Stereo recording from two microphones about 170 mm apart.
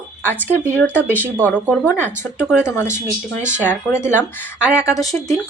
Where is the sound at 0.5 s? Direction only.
15° right (ahead or behind).